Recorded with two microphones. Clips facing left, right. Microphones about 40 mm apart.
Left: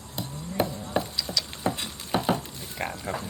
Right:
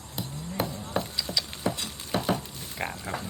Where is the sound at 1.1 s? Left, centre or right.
Centre.